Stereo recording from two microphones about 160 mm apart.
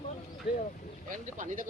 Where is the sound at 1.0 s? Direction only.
50° right (ahead or behind).